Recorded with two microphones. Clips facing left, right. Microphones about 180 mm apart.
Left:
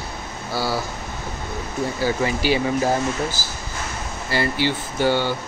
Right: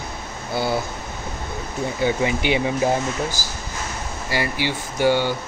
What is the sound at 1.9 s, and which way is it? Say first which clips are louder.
Speech: right 2 dB; 20° right (ahead or behind).